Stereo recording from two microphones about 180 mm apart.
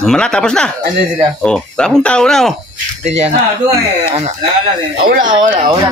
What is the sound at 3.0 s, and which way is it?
Speech, 35° right (ahead or behind).